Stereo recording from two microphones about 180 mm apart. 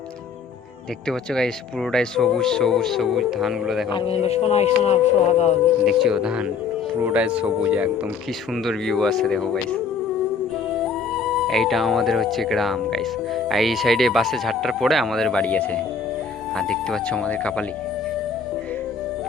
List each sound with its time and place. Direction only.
1.0 s speech: 5° left (ahead or behind)
3.9 s speech: 35° left (ahead or behind)
5.8 s speech: 5° right (ahead or behind)
10.8 s speech: centre (ahead or behind)